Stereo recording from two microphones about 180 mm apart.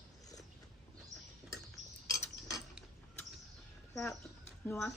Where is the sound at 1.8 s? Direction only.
40° right (ahead or behind).